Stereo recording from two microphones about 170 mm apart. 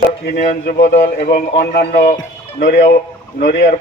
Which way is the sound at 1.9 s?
45° left (ahead or behind).